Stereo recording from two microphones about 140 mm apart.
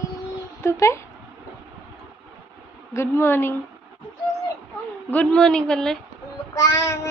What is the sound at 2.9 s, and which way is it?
Speech, 20° left (ahead or behind).